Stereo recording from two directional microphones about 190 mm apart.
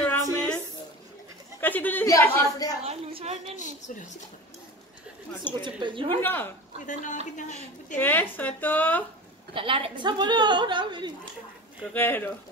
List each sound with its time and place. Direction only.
0.0 s a sound: 5° left (ahead or behind)
1.6 s a sound: 10° left (ahead or behind)
2.8 s a woman's voice: 30° right (ahead or behind)
3.5 s a woman's voice: 40° left (ahead or behind)
5.5 s a woman's voice: 25° right (ahead or behind)
6.2 s speech: 10° left (ahead or behind)
6.9 s a woman's voice: 40° left (ahead or behind)
8.0 s speech: 10° left (ahead or behind)
9.5 s a woman's voice: 25° right (ahead or behind)
11.9 s speech: 10° left (ahead or behind)